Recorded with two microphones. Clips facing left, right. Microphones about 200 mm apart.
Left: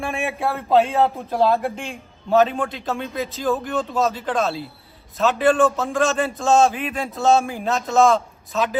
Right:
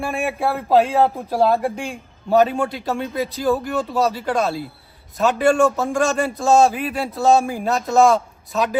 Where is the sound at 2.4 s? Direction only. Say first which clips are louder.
Right 2 dB; 10° right (ahead or behind).